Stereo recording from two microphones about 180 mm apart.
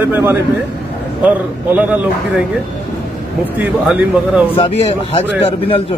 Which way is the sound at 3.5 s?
5° right (ahead or behind).